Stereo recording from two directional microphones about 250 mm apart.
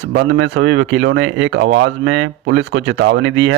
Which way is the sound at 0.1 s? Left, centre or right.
Right.